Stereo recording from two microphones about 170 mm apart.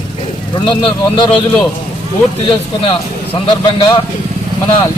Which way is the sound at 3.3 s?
30° left (ahead or behind).